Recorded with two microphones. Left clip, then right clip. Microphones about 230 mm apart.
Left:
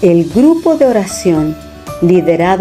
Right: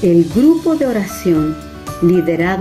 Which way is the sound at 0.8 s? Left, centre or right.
Left.